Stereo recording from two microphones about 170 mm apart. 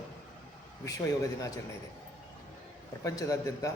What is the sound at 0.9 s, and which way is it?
Speech, 20° left (ahead or behind).